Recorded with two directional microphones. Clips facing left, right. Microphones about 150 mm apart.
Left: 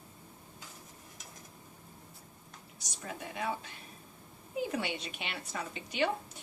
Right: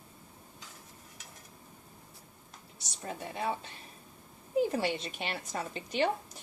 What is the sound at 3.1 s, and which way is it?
Speech, 30° right (ahead or behind).